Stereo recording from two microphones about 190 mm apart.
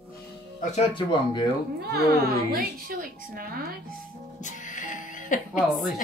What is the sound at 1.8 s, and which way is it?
A woman's voice, 55° right (ahead or behind).